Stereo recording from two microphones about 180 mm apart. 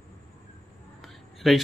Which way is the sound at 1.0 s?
Centre (ahead or behind).